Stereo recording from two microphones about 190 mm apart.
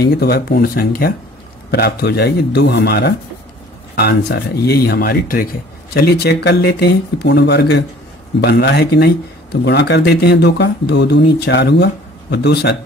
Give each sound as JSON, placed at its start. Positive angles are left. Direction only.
{"t": 0.0, "sound": "speech", "side_deg": 55}